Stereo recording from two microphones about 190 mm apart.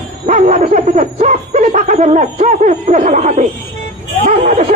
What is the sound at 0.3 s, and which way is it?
Speech, 40° right (ahead or behind).